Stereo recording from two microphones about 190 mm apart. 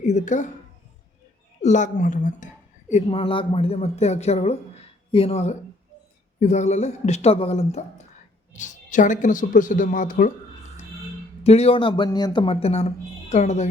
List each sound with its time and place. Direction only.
0.0 s speech: 40° left (ahead or behind)
1.6 s speech: 40° left (ahead or behind)
2.9 s speech: 30° left (ahead or behind)
11.4 s speech: 35° left (ahead or behind)